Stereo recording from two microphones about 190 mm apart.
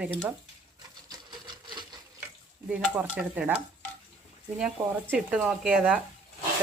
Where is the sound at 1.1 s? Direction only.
25° right (ahead or behind).